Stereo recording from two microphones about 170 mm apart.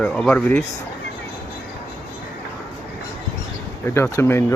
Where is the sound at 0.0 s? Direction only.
5° left (ahead or behind).